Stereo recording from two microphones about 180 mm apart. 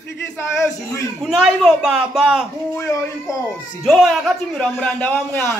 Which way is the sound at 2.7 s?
15° left (ahead or behind).